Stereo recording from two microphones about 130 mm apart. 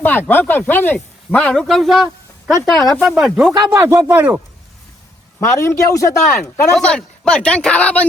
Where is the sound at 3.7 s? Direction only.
20° right (ahead or behind).